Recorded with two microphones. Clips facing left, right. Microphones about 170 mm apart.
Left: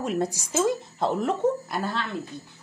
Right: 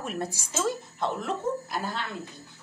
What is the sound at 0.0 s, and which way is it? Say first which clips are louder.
Speech: left 6 dB; 15° left (ahead or behind).